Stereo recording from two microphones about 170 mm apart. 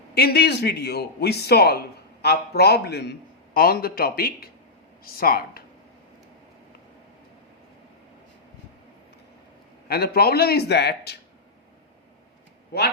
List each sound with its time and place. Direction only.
0.1 s a man's voice: 70° left (ahead or behind)
9.9 s a man's voice: 65° left (ahead or behind)